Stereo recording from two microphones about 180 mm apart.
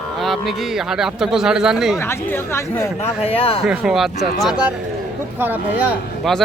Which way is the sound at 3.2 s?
30° left (ahead or behind).